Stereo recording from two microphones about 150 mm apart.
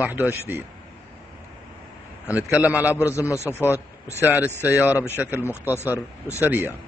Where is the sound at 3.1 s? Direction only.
20° left (ahead or behind).